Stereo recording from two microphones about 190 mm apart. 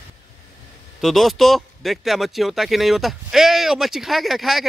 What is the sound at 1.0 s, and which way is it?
Speech, centre (ahead or behind).